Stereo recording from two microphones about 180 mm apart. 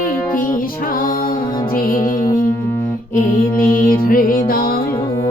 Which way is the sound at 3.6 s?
50° left (ahead or behind).